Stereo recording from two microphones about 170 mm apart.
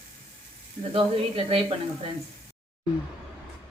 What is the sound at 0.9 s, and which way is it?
Speech, 35° right (ahead or behind).